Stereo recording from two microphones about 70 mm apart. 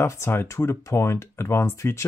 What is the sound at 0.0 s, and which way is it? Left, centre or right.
Speech, left.